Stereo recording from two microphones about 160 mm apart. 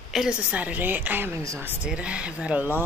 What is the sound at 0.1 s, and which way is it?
A woman's voice, 5° right (ahead or behind).